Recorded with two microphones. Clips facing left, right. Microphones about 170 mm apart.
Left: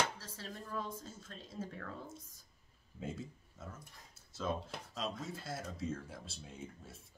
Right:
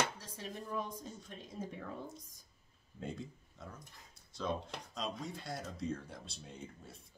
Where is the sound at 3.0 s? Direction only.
5° left (ahead or behind).